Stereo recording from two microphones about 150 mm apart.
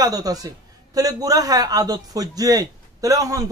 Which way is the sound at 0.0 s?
25° right (ahead or behind).